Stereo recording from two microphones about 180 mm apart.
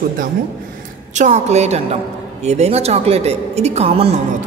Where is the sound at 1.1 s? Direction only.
40° right (ahead or behind).